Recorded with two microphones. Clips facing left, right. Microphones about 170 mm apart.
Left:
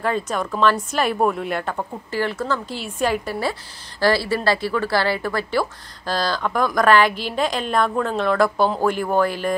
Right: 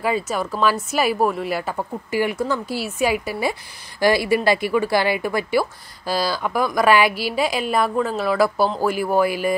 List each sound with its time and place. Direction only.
0.0 s a woman's voice: 5° right (ahead or behind)